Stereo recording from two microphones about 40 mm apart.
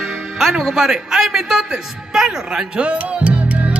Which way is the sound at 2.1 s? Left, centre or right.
Centre.